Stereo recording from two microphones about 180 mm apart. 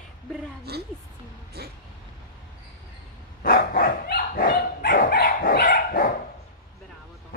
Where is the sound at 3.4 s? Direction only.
50° left (ahead or behind).